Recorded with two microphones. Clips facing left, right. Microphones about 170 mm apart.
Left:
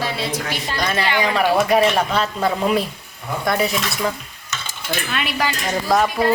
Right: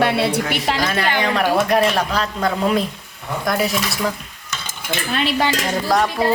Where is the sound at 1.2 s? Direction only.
10° left (ahead or behind).